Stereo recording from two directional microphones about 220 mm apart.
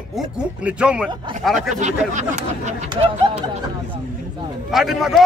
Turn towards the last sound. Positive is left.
turn(degrees=0)  # may be behind; listen again after turning